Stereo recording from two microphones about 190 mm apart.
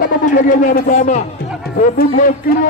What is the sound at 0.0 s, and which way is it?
A man's voice, 45° left (ahead or behind).